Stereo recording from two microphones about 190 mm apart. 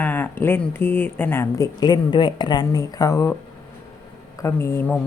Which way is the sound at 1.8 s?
25° left (ahead or behind).